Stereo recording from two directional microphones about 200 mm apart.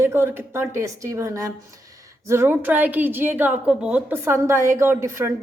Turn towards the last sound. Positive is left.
turn(degrees=-15)  # may be behind; listen again after turning